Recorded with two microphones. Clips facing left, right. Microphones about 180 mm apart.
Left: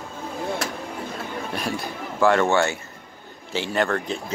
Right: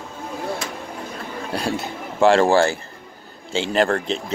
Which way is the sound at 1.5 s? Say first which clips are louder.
Right 6 dB; 25° right (ahead or behind).